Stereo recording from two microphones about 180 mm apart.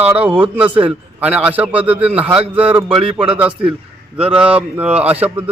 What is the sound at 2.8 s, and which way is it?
Speech, 30° right (ahead or behind).